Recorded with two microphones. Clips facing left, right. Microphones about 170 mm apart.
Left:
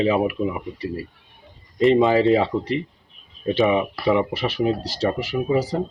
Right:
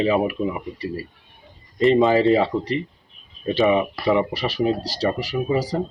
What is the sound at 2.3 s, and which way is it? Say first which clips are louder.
Speech: even; 20° left (ahead or behind).